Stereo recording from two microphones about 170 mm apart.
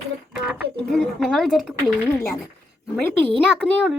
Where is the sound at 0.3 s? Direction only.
5° right (ahead or behind).